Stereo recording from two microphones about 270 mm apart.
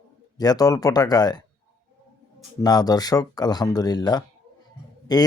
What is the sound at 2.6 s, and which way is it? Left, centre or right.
Speech, centre.